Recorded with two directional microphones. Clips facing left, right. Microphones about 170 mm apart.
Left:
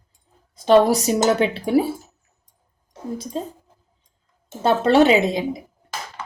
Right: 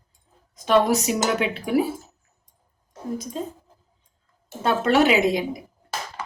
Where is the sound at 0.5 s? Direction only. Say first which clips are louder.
Left 4 dB; 30° left (ahead or behind).